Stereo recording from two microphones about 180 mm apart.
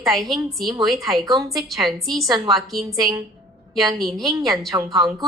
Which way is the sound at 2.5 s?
Centre (ahead or behind).